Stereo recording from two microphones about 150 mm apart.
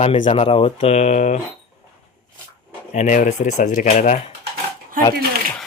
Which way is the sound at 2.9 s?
60° left (ahead or behind).